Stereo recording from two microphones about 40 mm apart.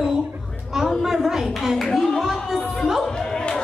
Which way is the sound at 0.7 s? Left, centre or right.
Centre.